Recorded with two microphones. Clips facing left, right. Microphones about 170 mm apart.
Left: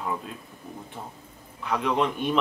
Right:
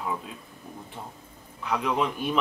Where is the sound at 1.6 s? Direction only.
Centre (ahead or behind).